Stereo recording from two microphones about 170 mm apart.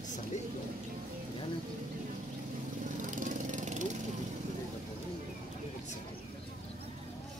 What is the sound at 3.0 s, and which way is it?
Lawn mower, 50° right (ahead or behind).